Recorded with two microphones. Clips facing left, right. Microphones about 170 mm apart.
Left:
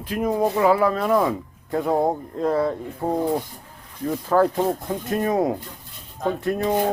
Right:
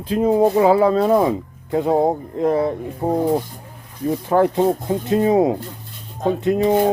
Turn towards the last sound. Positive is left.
turn(degrees=-20)  # may be behind; listen again after turning